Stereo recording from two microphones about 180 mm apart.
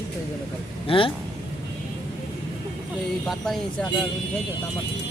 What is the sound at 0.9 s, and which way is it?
Speech, 30° left (ahead or behind).